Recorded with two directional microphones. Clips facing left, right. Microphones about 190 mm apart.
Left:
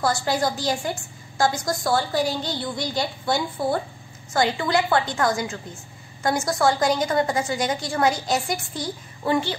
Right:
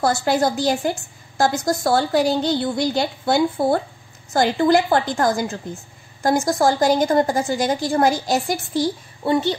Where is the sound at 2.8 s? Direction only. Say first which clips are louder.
Right 6 dB; 60° right (ahead or behind).